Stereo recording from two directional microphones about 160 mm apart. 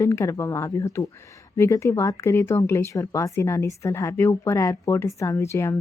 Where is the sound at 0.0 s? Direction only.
20° left (ahead or behind).